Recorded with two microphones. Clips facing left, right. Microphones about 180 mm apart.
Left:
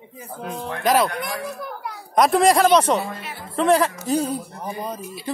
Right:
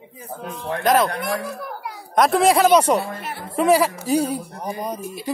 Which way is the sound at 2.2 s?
Centre (ahead or behind).